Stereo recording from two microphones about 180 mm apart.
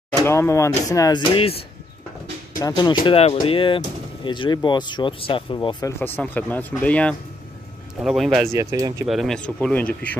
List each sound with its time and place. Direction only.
0.2 s speech: 15° left (ahead or behind); by 1.6 s 30° left (ahead or behind)
2.6 s speech: 20° left (ahead or behind)
3.1 s speech: 35° left (ahead or behind); by 8.5 s centre (ahead or behind)
8.5 s speech: 15° right (ahead or behind)
9.0 s speech: centre (ahead or behind)